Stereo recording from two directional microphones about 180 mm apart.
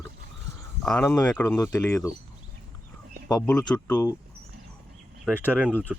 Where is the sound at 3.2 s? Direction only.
20° left (ahead or behind).